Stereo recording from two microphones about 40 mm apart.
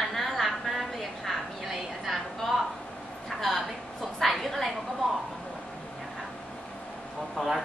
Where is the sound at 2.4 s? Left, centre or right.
Centre.